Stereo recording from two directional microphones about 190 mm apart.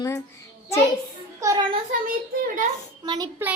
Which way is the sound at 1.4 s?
15° right (ahead or behind).